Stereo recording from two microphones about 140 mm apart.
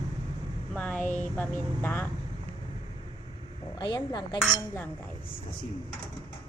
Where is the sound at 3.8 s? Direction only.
30° left (ahead or behind).